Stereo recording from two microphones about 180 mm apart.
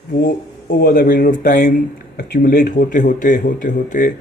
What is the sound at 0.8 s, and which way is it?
Speech, 55° left (ahead or behind).